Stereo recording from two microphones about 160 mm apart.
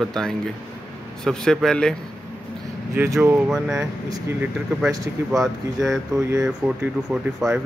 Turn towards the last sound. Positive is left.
turn(degrees=-5)  # may be behind; listen again after turning